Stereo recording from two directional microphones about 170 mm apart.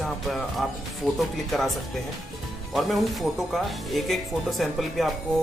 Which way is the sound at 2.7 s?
Centre (ahead or behind).